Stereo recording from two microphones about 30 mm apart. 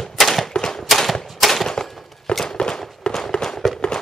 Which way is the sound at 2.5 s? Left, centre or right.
Left.